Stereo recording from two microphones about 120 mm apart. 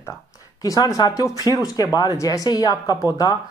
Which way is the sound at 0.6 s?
30° left (ahead or behind).